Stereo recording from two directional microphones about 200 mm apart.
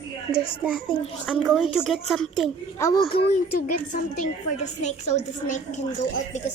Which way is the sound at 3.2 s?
45° left (ahead or behind).